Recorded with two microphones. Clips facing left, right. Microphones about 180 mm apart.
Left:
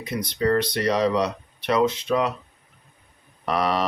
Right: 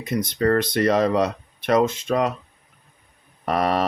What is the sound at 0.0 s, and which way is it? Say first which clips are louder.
Speech: right 3 dB; 50° right (ahead or behind).